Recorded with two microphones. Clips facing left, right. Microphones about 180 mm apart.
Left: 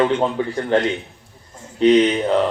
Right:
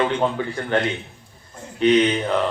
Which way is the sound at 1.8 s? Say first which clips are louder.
Left 3 dB; 30° left (ahead or behind).